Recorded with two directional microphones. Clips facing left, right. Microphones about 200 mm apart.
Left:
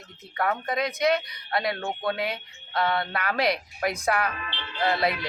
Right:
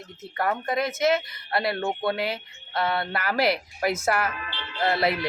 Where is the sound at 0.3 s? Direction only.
5° right (ahead or behind).